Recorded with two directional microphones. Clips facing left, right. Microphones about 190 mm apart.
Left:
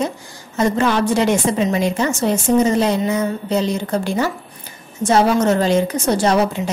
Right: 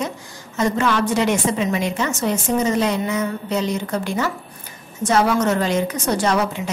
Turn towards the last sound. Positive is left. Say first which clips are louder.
# left 4 dB
turn(degrees=30)  # may be behind; listen again after turning